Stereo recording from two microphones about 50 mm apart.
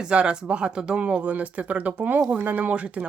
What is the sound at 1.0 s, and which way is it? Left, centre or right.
Speech, right.